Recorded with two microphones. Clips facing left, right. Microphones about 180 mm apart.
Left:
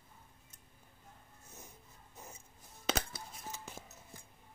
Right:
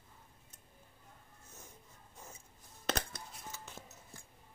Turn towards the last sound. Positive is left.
turn(degrees=5)  # may be behind; listen again after turning